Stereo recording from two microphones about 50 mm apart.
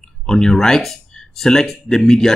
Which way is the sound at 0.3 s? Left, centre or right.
Centre.